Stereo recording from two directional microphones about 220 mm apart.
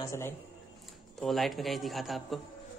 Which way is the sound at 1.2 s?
Centre (ahead or behind).